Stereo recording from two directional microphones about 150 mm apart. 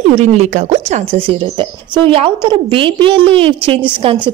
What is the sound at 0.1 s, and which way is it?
Speech, 50° right (ahead or behind).